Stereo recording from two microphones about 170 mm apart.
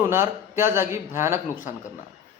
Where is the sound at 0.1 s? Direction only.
15° right (ahead or behind).